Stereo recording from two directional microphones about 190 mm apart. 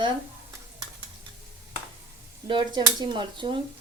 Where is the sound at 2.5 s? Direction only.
25° right (ahead or behind).